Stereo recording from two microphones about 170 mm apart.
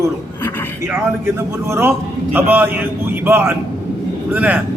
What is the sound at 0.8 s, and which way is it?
A man's voice, 10° right (ahead or behind).